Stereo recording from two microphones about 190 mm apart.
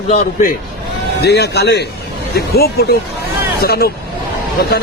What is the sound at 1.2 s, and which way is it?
A man's voice, 60° left (ahead or behind).